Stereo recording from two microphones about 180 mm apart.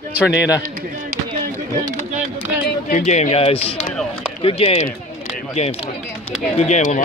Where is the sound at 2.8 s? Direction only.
40° left (ahead or behind).